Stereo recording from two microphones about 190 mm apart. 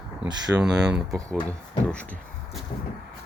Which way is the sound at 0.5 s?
5° right (ahead or behind).